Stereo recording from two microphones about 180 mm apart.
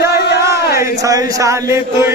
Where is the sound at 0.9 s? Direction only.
20° right (ahead or behind).